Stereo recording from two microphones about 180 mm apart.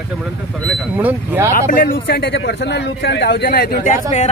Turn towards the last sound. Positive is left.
turn(degrees=45)  # may be behind; listen again after turning